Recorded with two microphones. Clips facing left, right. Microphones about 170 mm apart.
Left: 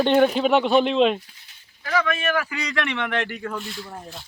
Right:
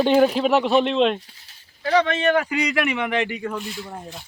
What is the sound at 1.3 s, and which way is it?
Speech, 35° right (ahead or behind).